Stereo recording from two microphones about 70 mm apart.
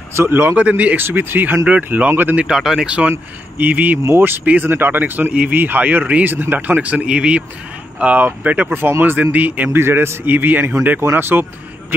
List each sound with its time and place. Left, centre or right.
0.1 s speech: right
0.6 s a man's voice: right
1.0 s a man's voice: right
2.3 s speech: centre
2.9 s a man's voice: right